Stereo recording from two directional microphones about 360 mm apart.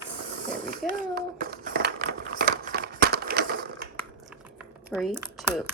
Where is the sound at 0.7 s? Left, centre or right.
Right.